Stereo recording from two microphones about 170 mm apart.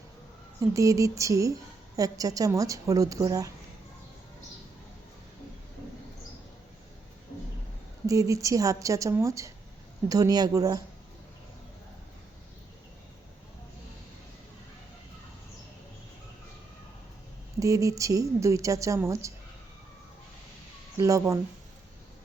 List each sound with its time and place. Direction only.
0.7 s speech: 20° right (ahead or behind)
8.0 s speech: 20° right (ahead or behind)
17.6 s speech: 20° right (ahead or behind)
21.0 s speech: 20° right (ahead or behind)